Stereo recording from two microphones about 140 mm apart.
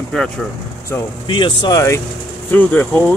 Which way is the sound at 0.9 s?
15° left (ahead or behind).